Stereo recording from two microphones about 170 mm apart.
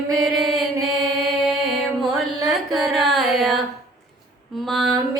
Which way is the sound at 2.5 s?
Centre (ahead or behind).